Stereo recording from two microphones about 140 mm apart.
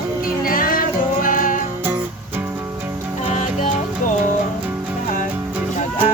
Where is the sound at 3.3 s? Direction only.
55° left (ahead or behind).